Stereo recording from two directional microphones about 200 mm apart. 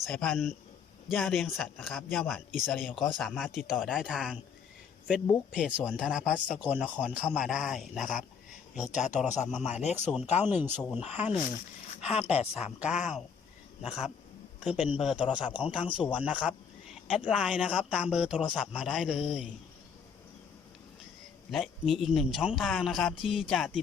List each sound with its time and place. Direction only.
0.0 s a man's voice: 5° left (ahead or behind)
5.5 s a man's voice: 5° right (ahead or behind)
8.7 s a man's voice: 35° left (ahead or behind)
10.3 s speech: 10° right (ahead or behind)
10.9 s a man's voice: 35° left (ahead or behind)
13.8 s a man's voice: centre (ahead or behind)
21.5 s a man's voice: centre (ahead or behind)